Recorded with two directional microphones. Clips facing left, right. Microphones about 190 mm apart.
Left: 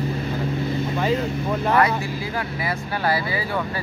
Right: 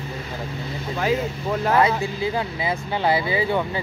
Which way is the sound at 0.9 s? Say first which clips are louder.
Right 2 dB; centre (ahead or behind).